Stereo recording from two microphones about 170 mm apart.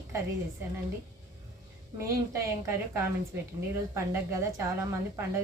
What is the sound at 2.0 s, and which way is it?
A woman's voice, 15° right (ahead or behind).